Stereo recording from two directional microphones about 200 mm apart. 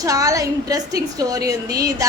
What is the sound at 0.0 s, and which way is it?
A woman's voice, 15° right (ahead or behind).